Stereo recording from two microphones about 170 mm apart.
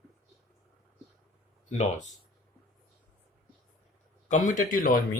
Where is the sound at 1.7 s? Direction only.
45° left (ahead or behind).